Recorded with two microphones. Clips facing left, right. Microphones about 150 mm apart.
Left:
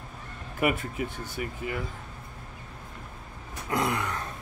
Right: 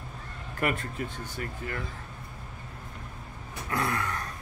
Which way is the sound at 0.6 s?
10° left (ahead or behind).